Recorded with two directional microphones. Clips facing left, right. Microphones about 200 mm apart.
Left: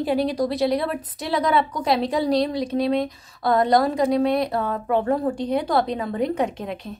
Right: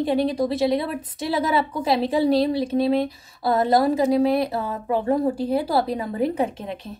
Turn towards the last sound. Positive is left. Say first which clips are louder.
# even
turn(degrees=0)  # may be behind; listen again after turning